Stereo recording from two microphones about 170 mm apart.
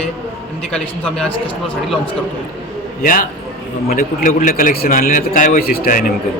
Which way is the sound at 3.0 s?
55° left (ahead or behind).